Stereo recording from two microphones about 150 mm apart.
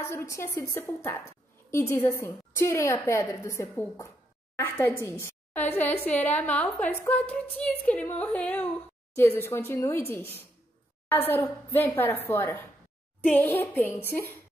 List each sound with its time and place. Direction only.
0.0 s a woman's voice: 15° left (ahead or behind)